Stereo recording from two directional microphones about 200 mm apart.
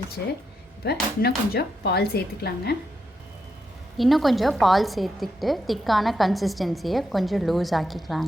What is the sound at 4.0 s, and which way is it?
A woman's voice, centre (ahead or behind).